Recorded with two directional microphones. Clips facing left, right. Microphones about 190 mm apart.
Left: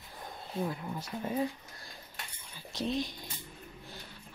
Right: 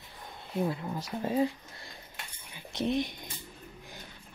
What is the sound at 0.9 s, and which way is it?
Speech, 30° right (ahead or behind).